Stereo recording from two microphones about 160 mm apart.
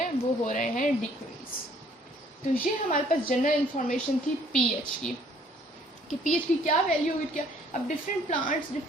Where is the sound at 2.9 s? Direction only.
60° left (ahead or behind).